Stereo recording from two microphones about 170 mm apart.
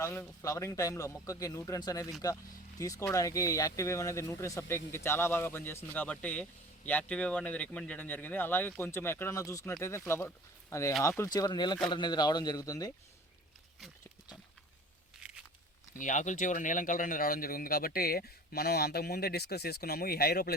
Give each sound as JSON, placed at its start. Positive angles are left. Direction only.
{"t": 0.0, "sound": "speech", "side_deg": 15}
{"t": 15.2, "sound": "a sound", "side_deg": -5}
{"t": 16.0, "sound": "speech", "side_deg": 50}